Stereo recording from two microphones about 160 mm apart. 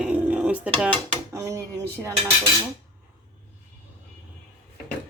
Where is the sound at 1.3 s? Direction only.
20° right (ahead or behind).